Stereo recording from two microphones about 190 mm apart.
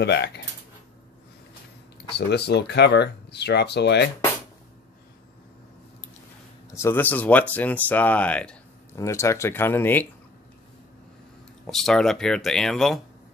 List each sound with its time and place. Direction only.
0.0 s speech: 65° left (ahead or behind)
2.1 s speech: 60° left (ahead or behind)
6.7 s speech: 15° left (ahead or behind)
11.6 s speech: centre (ahead or behind)